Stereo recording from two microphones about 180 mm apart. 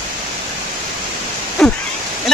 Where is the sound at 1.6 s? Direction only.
Centre (ahead or behind).